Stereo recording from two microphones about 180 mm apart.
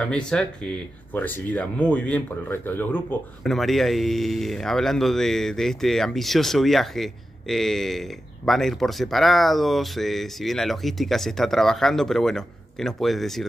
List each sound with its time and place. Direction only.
0.0 s speech: 5° left (ahead or behind)